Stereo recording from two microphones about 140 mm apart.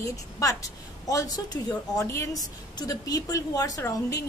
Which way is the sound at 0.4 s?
25° left (ahead or behind).